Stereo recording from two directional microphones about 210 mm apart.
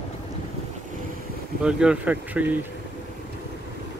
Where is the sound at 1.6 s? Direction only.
5° right (ahead or behind).